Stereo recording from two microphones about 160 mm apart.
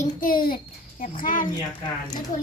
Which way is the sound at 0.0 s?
60° left (ahead or behind).